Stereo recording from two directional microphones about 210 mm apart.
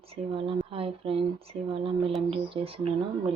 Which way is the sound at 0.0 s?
25° right (ahead or behind).